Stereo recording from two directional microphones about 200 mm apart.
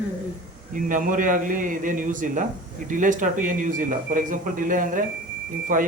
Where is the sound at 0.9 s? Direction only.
40° right (ahead or behind).